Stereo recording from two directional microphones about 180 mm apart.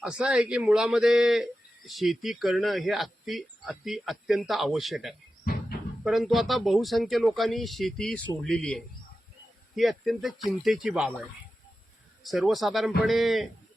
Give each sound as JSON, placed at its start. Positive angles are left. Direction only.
{"t": 0.0, "sound": "speech", "side_deg": -5}